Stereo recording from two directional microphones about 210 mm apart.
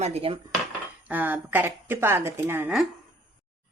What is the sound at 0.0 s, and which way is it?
Dishes, 30° right (ahead or behind).